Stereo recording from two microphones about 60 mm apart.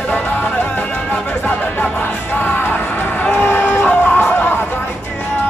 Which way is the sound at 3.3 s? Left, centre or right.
Left.